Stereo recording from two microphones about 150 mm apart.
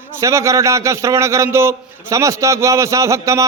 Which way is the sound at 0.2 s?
20° right (ahead or behind).